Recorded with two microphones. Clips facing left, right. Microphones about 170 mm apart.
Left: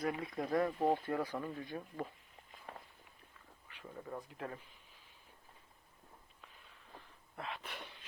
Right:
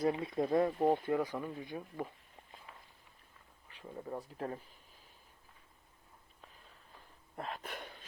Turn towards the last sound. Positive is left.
turn(degrees=-50)  # may be behind; listen again after turning